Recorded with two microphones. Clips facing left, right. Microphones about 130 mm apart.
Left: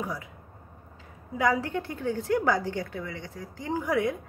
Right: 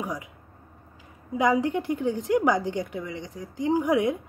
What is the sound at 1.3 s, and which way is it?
A woman's voice, 20° right (ahead or behind).